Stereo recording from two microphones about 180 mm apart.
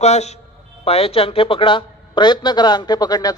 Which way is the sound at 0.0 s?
35° left (ahead or behind).